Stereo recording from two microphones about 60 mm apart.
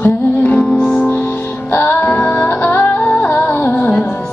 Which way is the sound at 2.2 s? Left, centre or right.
Centre.